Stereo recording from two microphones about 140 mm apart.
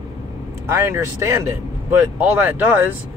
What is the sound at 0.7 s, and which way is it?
Speech, 20° right (ahead or behind).